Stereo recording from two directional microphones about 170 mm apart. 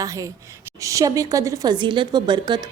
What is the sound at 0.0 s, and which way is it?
Speech, 20° right (ahead or behind).